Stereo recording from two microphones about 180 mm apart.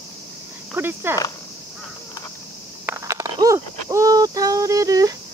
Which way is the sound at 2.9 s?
15° right (ahead or behind).